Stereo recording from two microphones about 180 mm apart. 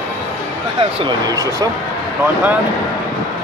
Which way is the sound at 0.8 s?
25° right (ahead or behind).